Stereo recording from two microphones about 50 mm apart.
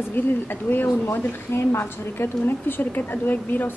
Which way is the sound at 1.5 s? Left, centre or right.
Left.